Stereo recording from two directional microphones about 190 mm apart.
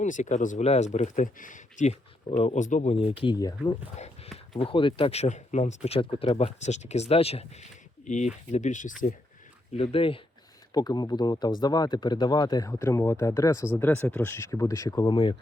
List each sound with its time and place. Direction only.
0.0 s speech: 40° left (ahead or behind); by 3.5 s 20° left (ahead or behind)
3.9 s speech: 35° left (ahead or behind)
9.7 s speech: 30° left (ahead or behind)